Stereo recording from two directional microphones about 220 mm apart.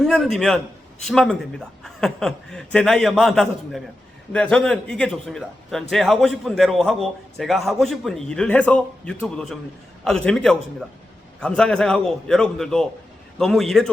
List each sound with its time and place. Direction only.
0.0 s a man's voice: centre (ahead or behind)